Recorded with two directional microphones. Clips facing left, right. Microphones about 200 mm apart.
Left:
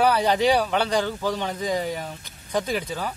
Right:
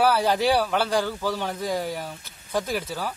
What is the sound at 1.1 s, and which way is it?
Speech, 15° left (ahead or behind).